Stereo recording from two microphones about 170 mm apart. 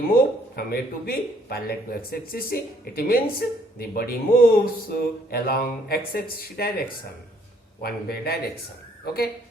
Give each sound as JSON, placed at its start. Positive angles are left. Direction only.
{"t": 0.1, "sound": "speech", "side_deg": 60}